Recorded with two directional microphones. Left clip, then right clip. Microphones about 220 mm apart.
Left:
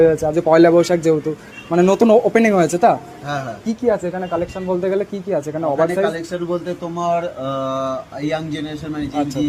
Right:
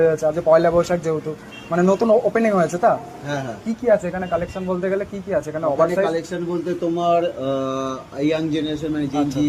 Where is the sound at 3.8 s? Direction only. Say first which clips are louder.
Right 1 dB; 25° left (ahead or behind).